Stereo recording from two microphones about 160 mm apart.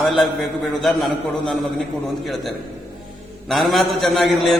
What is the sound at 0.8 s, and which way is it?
Speech, centre (ahead or behind).